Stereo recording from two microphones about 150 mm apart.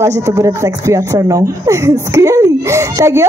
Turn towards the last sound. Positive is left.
turn(degrees=-20)  # may be behind; listen again after turning